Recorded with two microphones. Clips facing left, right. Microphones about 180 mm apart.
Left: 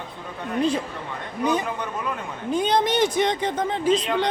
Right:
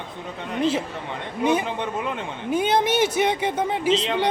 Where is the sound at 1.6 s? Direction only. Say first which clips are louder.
Right 2 dB; 25° right (ahead or behind).